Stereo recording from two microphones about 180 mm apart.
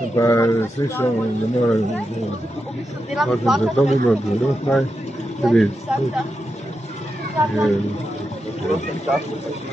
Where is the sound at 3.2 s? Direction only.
Centre (ahead or behind).